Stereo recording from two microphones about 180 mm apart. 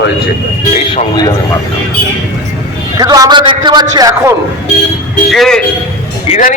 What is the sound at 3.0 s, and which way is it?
A man's voice, 20° right (ahead or behind).